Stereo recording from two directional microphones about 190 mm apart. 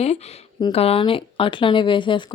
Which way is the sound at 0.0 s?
35° left (ahead or behind).